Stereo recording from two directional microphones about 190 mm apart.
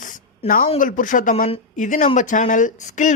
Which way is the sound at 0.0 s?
45° left (ahead or behind).